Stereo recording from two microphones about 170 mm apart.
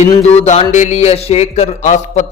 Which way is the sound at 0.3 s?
40° left (ahead or behind).